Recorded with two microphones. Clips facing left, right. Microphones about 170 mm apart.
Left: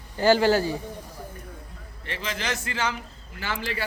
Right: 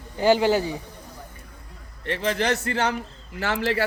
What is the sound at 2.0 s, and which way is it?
Speech, 60° right (ahead or behind).